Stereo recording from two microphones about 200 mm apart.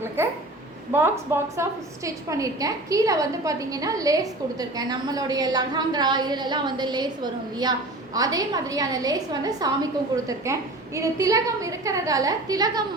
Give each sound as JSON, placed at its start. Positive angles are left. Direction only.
{"t": 0.9, "sound": "a woman's voice", "side_deg": -10}